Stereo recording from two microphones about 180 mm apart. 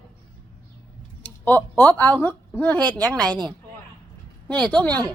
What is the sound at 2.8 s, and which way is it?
Speech, 20° right (ahead or behind).